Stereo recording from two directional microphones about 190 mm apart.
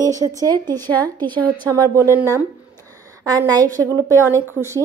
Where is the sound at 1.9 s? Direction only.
15° right (ahead or behind).